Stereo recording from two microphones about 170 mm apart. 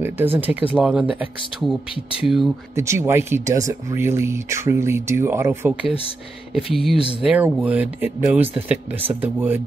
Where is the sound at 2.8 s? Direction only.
15° right (ahead or behind).